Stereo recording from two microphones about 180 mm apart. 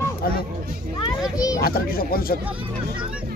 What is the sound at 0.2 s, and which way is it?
Speech, 55° left (ahead or behind).